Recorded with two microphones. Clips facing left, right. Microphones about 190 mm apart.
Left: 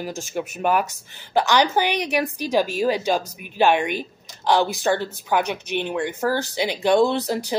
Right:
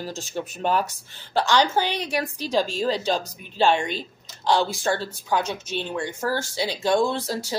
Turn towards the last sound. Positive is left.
turn(degrees=20)  # may be behind; listen again after turning